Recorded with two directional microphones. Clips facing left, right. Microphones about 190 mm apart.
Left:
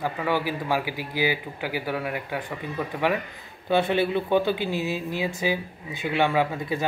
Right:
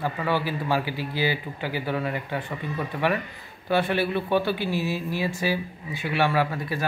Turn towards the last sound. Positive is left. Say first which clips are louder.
# left 1 dB
turn(degrees=20)  # may be behind; listen again after turning